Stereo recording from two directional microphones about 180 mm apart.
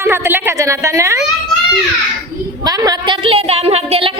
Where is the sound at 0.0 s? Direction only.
15° right (ahead or behind).